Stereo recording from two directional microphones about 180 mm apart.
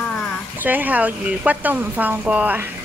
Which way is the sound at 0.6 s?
10° right (ahead or behind).